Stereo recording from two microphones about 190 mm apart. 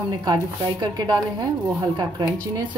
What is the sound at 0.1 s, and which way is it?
A woman's voice, 20° right (ahead or behind).